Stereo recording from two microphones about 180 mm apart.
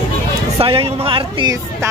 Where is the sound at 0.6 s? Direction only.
30° right (ahead or behind).